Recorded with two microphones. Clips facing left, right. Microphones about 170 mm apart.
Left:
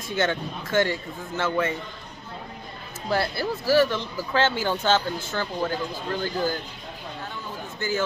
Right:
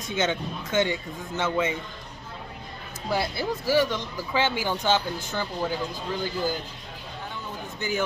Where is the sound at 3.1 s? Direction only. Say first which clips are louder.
Left 2 dB; 15° right (ahead or behind).